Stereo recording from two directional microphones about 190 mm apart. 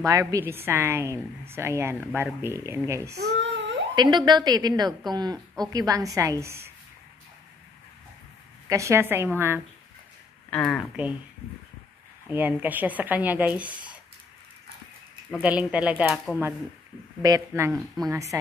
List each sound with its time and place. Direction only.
0.0 s a woman's voice: 20° right (ahead or behind)
3.2 s babbling: 65° right (ahead or behind)
3.9 s a woman's voice: 20° right (ahead or behind)
8.6 s a woman's voice: 15° right (ahead or behind)
10.5 s speech: 5° left (ahead or behind)
12.3 s a woman's voice: 10° right (ahead or behind)
15.4 s a woman's voice: 5° right (ahead or behind)
17.2 s a woman's voice: 15° right (ahead or behind)